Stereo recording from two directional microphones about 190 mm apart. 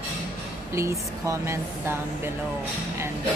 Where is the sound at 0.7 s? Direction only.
15° right (ahead or behind).